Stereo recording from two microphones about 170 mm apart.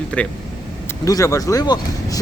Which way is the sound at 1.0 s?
20° left (ahead or behind).